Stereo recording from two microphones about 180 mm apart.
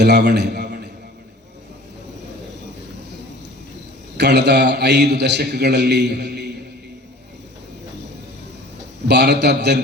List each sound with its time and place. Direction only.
0.0 s a sound: 70° right (ahead or behind)
4.2 s a man's voice: 70° right (ahead or behind)
9.0 s a man's voice: 70° right (ahead or behind)